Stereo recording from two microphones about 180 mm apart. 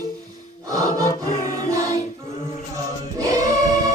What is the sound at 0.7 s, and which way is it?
Music, 20° right (ahead or behind).